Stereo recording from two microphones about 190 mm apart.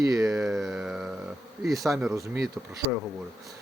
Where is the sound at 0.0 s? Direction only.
20° right (ahead or behind).